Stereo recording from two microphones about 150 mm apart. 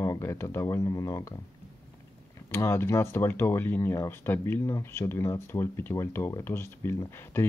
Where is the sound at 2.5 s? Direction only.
15° left (ahead or behind).